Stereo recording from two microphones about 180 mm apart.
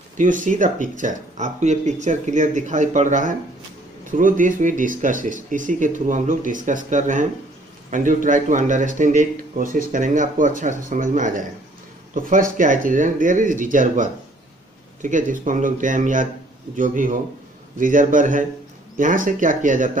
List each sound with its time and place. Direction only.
0.2 s speech: 45° right (ahead or behind)